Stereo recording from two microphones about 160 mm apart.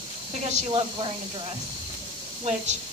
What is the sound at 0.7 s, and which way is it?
Speech, 35° right (ahead or behind).